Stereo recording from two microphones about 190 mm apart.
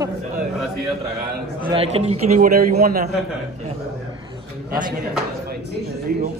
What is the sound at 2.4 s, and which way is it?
Speech, 55° right (ahead or behind).